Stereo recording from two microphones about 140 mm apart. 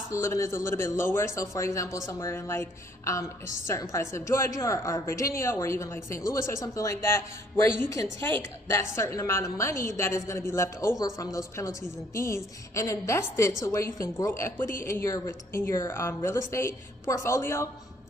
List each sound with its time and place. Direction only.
0.1 s a woman's voice: 20° left (ahead or behind)